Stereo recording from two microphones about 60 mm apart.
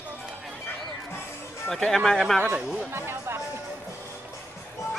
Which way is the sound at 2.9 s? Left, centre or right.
Right.